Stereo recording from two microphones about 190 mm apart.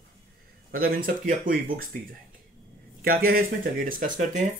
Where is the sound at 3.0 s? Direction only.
50° right (ahead or behind).